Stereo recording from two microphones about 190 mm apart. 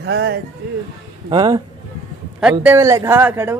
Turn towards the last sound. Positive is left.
turn(degrees=-10)  # may be behind; listen again after turning